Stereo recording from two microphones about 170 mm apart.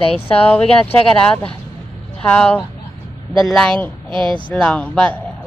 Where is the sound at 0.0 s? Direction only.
35° left (ahead or behind).